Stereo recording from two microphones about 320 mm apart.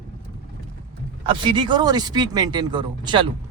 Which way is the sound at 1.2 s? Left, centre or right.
Centre.